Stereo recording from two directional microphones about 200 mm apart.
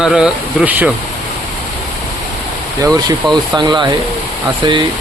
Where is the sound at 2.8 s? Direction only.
15° right (ahead or behind).